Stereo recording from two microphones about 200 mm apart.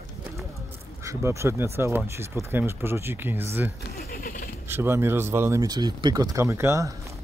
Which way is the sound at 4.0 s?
45° left (ahead or behind).